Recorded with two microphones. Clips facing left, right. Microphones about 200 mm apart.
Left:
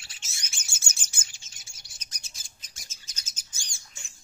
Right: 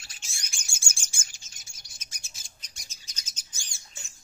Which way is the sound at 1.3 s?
40° right (ahead or behind).